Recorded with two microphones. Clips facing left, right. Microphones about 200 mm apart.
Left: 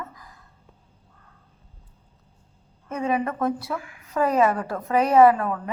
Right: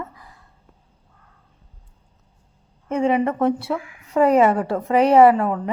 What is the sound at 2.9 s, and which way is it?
A woman's voice, 25° right (ahead or behind).